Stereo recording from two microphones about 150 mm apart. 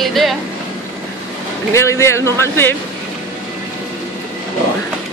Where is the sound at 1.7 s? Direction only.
20° left (ahead or behind).